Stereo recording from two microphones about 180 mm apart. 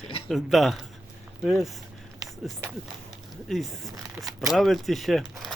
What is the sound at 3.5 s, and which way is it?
Speech, centre (ahead or behind).